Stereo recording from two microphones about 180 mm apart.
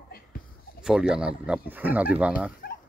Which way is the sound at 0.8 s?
5° right (ahead or behind).